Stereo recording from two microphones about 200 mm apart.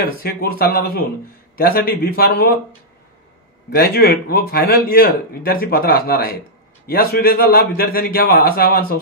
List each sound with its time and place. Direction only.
0.0 s speech: 50° left (ahead or behind)
3.7 s speech: 50° left (ahead or behind)